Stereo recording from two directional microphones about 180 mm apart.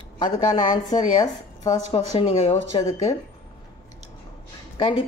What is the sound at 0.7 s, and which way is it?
A woman's voice, 20° left (ahead or behind).